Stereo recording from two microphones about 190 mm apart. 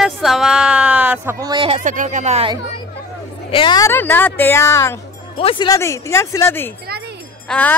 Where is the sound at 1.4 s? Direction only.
25° right (ahead or behind).